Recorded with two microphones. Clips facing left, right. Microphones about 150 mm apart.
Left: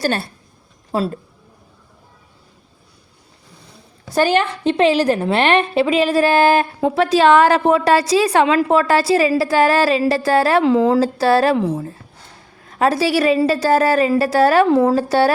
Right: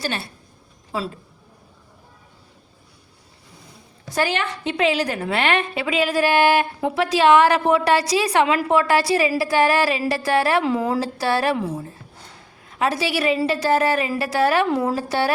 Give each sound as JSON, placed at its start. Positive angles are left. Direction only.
{"t": 4.1, "sound": "a woman's voice", "side_deg": 35}
{"t": 12.8, "sound": "a woman's voice", "side_deg": 35}